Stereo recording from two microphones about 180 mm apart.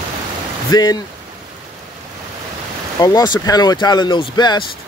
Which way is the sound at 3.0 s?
25° left (ahead or behind).